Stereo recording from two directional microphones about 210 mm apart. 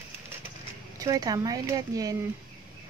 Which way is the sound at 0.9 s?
15° right (ahead or behind).